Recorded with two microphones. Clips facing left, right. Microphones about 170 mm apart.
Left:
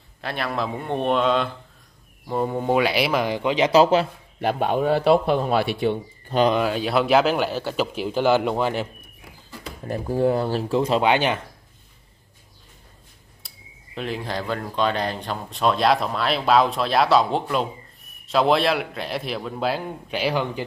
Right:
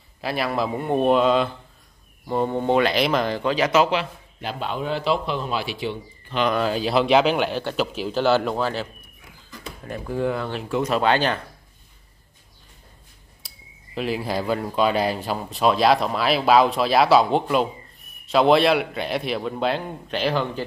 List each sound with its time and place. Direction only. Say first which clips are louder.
0.2 s speech: right 2 dB; 5° right (ahead or behind); by 3.7 s 20° left (ahead or behind)
3.7 s speech: left 6 dB; 40° left (ahead or behind)
4.4 s a man's voice: left 7 dB; 55° left (ahead or behind)
6.6 s speech: right 1 dB; centre (ahead or behind); by 8.8 s 15° left (ahead or behind)
9.8 s speech: left 4 dB; 35° left (ahead or behind)
11.0 s speech: left 1 dB; 15° left (ahead or behind)
13.9 s speech: right 3 dB; 5° right (ahead or behind); by 20.6 s 10° left (ahead or behind)